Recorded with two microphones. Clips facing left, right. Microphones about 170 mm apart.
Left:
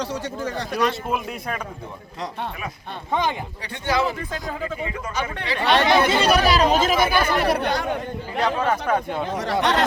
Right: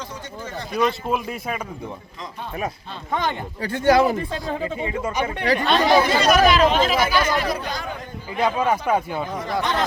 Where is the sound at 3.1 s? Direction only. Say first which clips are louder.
Left 1 dB; 15° left (ahead or behind).